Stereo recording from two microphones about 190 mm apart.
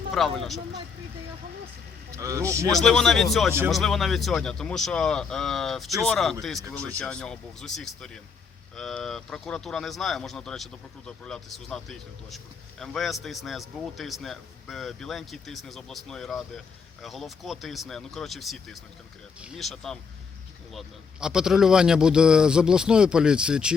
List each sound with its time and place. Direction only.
0.1 s speech: centre (ahead or behind)
2.1 s speech: 15° right (ahead or behind)
2.6 s speech: 5° left (ahead or behind)